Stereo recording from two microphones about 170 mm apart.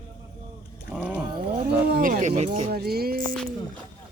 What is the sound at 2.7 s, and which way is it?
Music, 65° right (ahead or behind).